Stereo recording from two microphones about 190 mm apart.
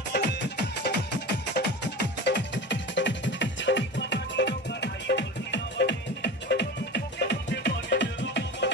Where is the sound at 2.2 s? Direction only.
70° left (ahead or behind).